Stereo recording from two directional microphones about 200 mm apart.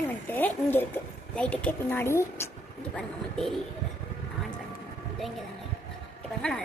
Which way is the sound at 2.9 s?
Centre (ahead or behind).